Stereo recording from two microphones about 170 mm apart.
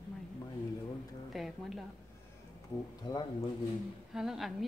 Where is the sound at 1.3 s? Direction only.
Centre (ahead or behind).